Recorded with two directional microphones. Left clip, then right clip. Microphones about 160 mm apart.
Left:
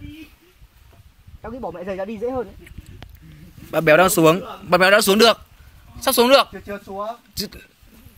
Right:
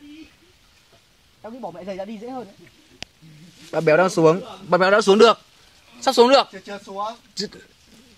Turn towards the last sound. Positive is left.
turn(degrees=-25)  # may be behind; listen again after turning